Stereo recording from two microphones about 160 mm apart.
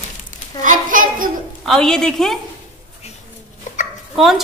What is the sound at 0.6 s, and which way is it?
Speech, 55° right (ahead or behind).